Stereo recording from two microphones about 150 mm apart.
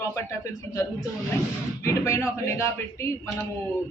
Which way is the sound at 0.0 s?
20° left (ahead or behind).